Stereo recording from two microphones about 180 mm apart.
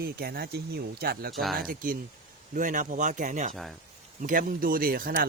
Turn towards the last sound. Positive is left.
turn(degrees=-55)  # may be behind; listen again after turning